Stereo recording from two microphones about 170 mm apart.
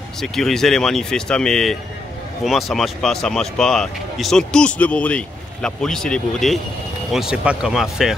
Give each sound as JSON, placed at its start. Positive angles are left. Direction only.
{"t": 0.2, "sound": "speech", "side_deg": 0}